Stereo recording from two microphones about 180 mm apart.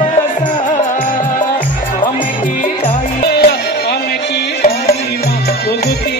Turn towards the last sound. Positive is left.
turn(degrees=60)  # may be behind; listen again after turning